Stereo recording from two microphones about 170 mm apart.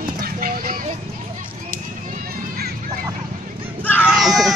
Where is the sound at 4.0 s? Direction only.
5° right (ahead or behind).